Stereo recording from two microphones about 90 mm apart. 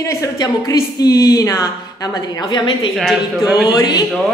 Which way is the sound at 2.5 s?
60° left (ahead or behind).